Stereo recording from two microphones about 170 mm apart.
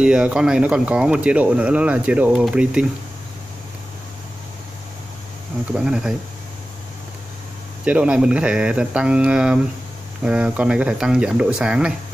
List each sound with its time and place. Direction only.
0.0 s speech: 5° right (ahead or behind)
5.7 s speech: 5° right (ahead or behind)
7.8 s speech: 5° right (ahead or behind)